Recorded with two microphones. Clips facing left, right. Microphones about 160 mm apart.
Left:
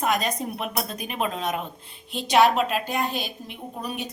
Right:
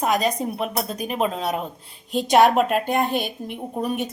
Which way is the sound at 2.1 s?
45° right (ahead or behind).